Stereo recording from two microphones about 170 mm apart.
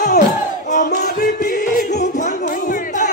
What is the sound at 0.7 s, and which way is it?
Music, 50° left (ahead or behind).